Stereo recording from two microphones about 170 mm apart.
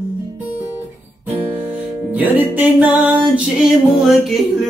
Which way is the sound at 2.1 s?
10° right (ahead or behind).